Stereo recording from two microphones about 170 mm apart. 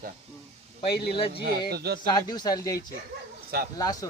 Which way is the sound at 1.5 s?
70° right (ahead or behind).